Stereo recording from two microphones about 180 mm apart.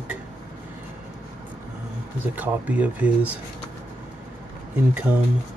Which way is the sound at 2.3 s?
10° right (ahead or behind).